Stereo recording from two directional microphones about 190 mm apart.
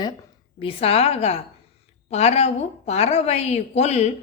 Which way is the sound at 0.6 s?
30° left (ahead or behind).